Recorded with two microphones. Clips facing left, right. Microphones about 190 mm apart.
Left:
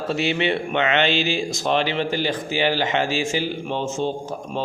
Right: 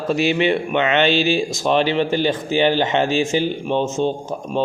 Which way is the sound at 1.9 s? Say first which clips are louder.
Right 5 dB; 20° right (ahead or behind).